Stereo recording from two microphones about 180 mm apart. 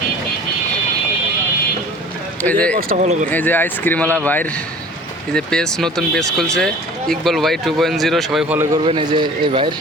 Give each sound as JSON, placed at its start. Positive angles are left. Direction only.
{"t": 2.4, "sound": "speech", "side_deg": 10}
{"t": 2.9, "sound": "speech", "side_deg": -40}
{"t": 3.2, "sound": "speech", "side_deg": 10}
{"t": 8.8, "sound": "speech", "side_deg": -30}